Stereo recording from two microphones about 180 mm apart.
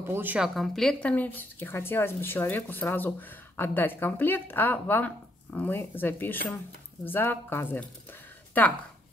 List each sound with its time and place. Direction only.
0.1 s a woman's voice: 10° right (ahead or behind); by 8.7 s 10° left (ahead or behind)